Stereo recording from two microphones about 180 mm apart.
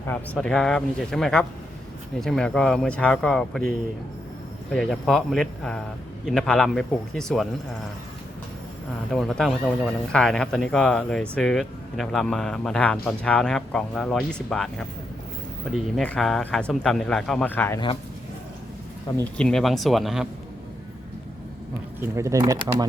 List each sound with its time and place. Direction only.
0.1 s speech: 5° left (ahead or behind)
4.7 s speech: centre (ahead or behind)
9.1 s speech: centre (ahead or behind)
19.2 s speech: 5° left (ahead or behind)
22.0 s speech: 15° right (ahead or behind)